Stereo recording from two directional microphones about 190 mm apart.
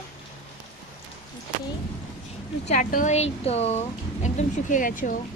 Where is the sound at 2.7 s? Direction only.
45° left (ahead or behind).